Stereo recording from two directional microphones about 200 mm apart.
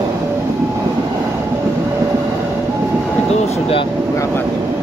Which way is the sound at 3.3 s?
30° left (ahead or behind).